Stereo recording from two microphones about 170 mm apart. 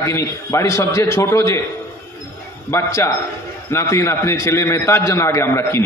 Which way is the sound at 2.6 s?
15° left (ahead or behind).